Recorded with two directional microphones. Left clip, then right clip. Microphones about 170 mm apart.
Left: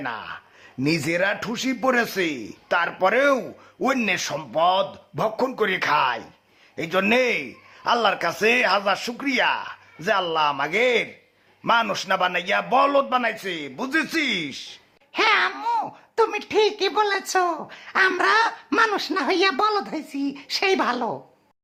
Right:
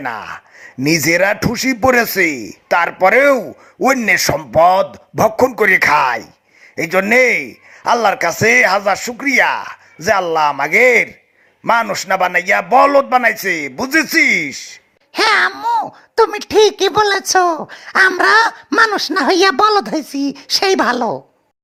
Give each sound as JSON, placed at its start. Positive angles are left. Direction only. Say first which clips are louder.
{"t": 0.0, "sound": "a man's voice", "louder": "right 7 dB", "side_deg": -35}
{"t": 15.1, "sound": "babbling", "louder": "right 7 dB", "side_deg": -40}
{"t": 15.5, "sound": "babbling", "louder": "right 8 dB", "side_deg": -20}
{"t": 16.1, "sound": "speech", "louder": "right 9 dB", "side_deg": -40}